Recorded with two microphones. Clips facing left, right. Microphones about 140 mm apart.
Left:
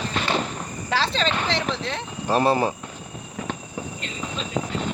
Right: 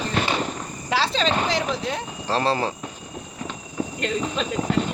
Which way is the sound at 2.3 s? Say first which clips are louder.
Left 3 dB; 20° left (ahead or behind).